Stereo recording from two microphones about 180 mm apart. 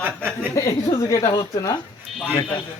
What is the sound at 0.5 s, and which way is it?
Speech, 15° left (ahead or behind).